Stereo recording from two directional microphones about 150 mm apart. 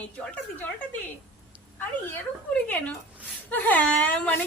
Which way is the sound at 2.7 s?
10° left (ahead or behind).